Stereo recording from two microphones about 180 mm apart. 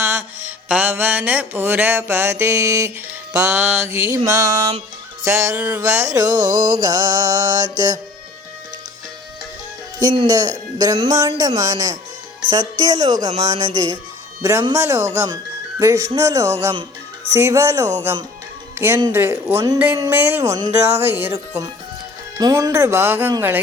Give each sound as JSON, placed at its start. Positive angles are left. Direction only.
{"t": 0.0, "sound": "music", "side_deg": -15}
{"t": 6.7, "sound": "speech", "side_deg": -25}
{"t": 10.0, "sound": "speech", "side_deg": -20}
{"t": 14.4, "sound": "music", "side_deg": -15}